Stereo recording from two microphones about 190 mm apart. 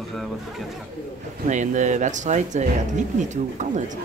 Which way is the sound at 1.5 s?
40° right (ahead or behind).